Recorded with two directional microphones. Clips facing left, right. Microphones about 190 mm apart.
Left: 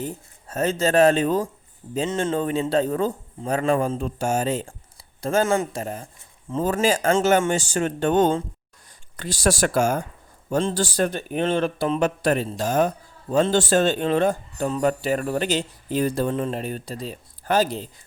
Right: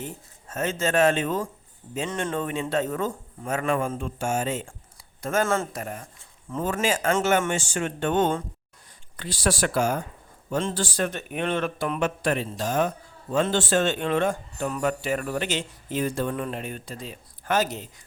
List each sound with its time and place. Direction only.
0.0 s speech: 35° left (ahead or behind)
5.5 s speech: 20° left (ahead or behind)